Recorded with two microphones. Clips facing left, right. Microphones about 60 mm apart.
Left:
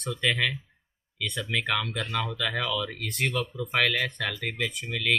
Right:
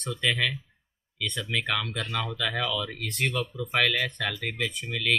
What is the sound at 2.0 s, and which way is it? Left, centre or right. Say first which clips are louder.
Speech: left 1 dB; centre.